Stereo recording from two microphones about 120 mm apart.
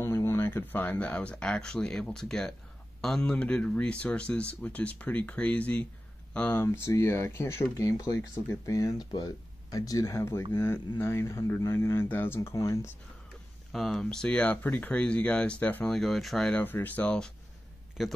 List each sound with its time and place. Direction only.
0.0 s speech: 20° left (ahead or behind)
13.7 s speech: centre (ahead or behind)
16.6 s speech: 15° left (ahead or behind)
18.0 s a man's voice: centre (ahead or behind)